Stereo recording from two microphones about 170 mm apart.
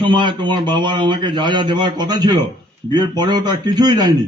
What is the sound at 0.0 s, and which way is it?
A man's voice, 30° right (ahead or behind).